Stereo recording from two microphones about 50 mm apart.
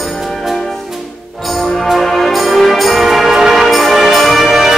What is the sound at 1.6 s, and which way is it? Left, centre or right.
Music, centre.